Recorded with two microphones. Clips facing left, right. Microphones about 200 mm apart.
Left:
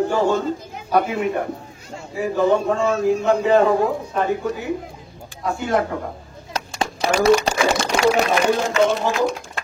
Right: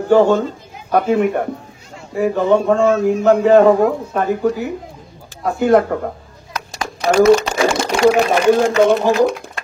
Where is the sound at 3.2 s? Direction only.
60° right (ahead or behind).